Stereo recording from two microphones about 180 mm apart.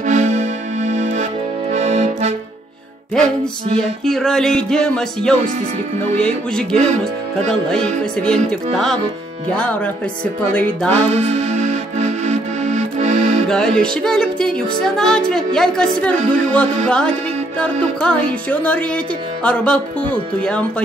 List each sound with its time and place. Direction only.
0.0 s music: 40° right (ahead or behind)
1.7 s accordion: 40° right (ahead or behind)
3.8 s music: centre (ahead or behind)
10.9 s music: 35° right (ahead or behind)
13.5 s music: 5° left (ahead or behind)